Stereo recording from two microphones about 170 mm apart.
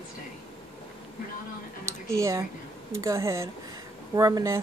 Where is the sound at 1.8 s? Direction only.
15° right (ahead or behind).